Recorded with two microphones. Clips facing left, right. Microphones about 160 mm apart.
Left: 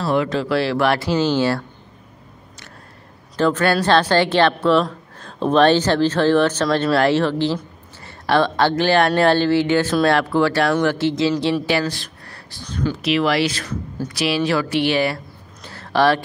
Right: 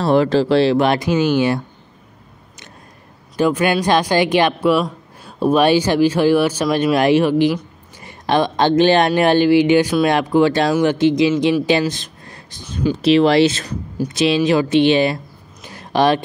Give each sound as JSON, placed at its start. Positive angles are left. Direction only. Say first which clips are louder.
{"t": 0.0, "sound": "speech", "louder": "right 5 dB", "side_deg": -35}
{"t": 3.3, "sound": "speech", "louder": "right 1 dB", "side_deg": -10}
{"t": 15.6, "sound": "a sound", "louder": "right 1 dB", "side_deg": -15}